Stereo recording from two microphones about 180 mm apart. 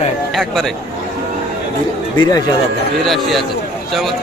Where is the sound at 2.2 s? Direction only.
20° left (ahead or behind).